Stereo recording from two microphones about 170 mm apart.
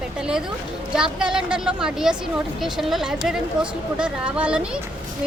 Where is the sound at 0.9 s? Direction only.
5° right (ahead or behind).